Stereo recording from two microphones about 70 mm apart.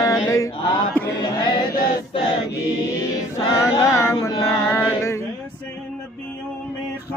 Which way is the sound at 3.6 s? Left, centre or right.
Left.